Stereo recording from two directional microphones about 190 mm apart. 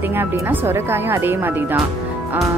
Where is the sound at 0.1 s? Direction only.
10° right (ahead or behind).